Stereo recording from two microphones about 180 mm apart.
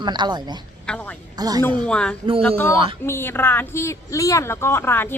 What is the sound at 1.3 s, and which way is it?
Speech, 20° right (ahead or behind).